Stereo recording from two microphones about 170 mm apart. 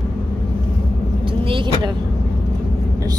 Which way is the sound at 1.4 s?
30° right (ahead or behind).